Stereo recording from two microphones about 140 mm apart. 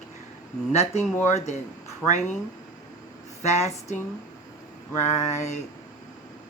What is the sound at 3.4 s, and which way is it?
Speech, 50° left (ahead or behind).